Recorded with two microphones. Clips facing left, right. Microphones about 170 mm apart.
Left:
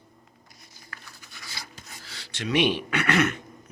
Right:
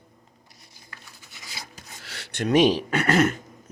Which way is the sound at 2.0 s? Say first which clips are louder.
Right 6 dB; 65° right (ahead or behind).